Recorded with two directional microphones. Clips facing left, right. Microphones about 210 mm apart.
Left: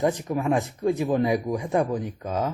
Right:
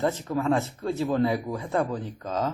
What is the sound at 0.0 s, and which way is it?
A man's voice, 15° left (ahead or behind).